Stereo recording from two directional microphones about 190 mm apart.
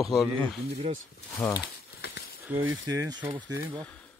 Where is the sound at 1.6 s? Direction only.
60° left (ahead or behind).